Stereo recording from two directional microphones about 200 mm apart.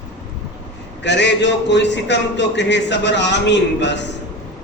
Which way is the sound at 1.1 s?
60° left (ahead or behind).